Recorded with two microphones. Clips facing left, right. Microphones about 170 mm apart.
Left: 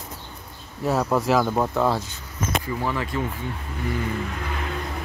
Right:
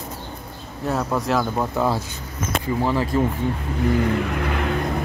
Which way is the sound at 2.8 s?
30° right (ahead or behind).